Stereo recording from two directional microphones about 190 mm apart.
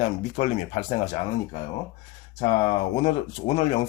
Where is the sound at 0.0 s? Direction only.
40° left (ahead or behind).